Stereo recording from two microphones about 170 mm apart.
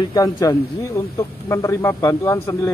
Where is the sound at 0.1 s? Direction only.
20° left (ahead or behind).